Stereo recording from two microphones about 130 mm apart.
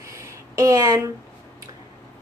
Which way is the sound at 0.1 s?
25° right (ahead or behind).